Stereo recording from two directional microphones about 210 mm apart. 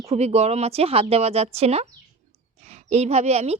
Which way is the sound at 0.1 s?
30° right (ahead or behind).